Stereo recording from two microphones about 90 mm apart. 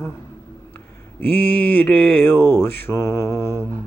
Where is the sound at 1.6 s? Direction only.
20° left (ahead or behind).